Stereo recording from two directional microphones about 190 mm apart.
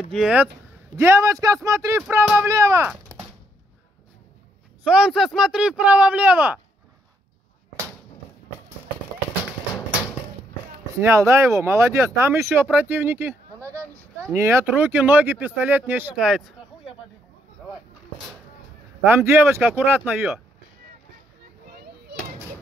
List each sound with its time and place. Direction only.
0.1 s speech: 5° right (ahead or behind)
0.9 s speech: 15° right (ahead or behind)
2.9 s a sound: 10° right (ahead or behind)
4.8 s speech: 5° right (ahead or behind)
11.0 s speech: 15° right (ahead or behind)
19.0 s speech: 10° right (ahead or behind)
20.1 s speech: centre (ahead or behind)
21.6 s children playing: 50° right (ahead or behind)